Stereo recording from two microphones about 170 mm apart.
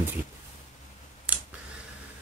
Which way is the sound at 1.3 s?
10° right (ahead or behind).